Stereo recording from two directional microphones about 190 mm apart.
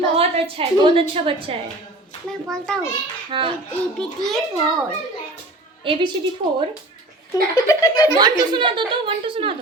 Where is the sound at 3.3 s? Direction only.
25° right (ahead or behind).